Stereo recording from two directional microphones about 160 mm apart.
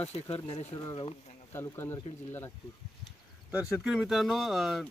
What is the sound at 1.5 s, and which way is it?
Speech, 15° left (ahead or behind).